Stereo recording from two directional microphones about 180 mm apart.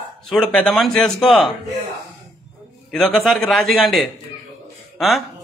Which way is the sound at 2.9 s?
Centre (ahead or behind).